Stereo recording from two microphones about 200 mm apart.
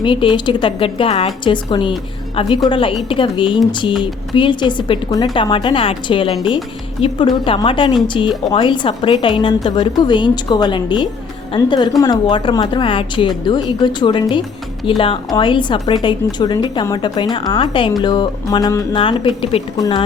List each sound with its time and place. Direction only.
0.0 s a woman's voice: 25° left (ahead or behind)